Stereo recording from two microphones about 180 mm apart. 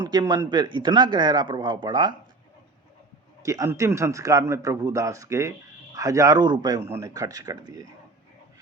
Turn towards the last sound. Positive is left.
turn(degrees=-20)  # may be behind; listen again after turning